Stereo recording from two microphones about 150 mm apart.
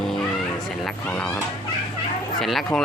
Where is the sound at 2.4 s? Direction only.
Centre (ahead or behind).